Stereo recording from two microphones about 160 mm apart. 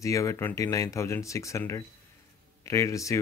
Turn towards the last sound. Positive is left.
turn(degrees=20)  # may be behind; listen again after turning